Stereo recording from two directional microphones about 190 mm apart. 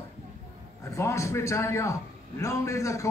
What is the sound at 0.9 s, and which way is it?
A man's voice, 15° left (ahead or behind).